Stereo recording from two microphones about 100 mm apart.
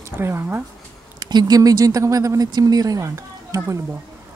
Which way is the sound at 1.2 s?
40° right (ahead or behind).